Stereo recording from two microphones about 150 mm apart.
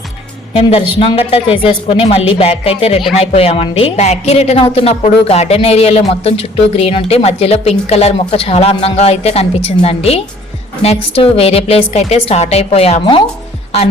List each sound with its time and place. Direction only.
0.5 s a woman's voice: 45° left (ahead or behind)